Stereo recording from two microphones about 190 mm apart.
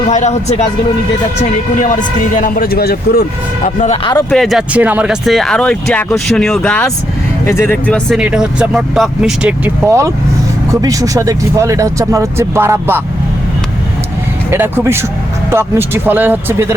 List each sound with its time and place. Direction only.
0.1 s a man's voice: 35° left (ahead or behind)
1.8 s a man's voice: 40° left (ahead or behind)
4.3 s speech: centre (ahead or behind)
8.2 s speech: 5° right (ahead or behind)
14.5 s speech: 10° right (ahead or behind)